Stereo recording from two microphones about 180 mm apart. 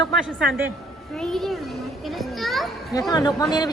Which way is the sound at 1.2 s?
5° left (ahead or behind).